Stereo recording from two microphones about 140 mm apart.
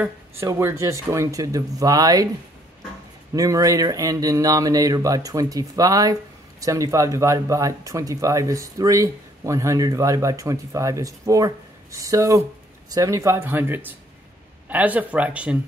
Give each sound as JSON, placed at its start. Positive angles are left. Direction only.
{"t": 0.0, "sound": "speech", "side_deg": -15}
{"t": 3.3, "sound": "speech", "side_deg": -25}